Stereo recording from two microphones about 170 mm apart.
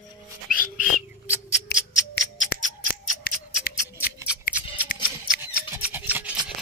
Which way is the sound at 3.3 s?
65° left (ahead or behind).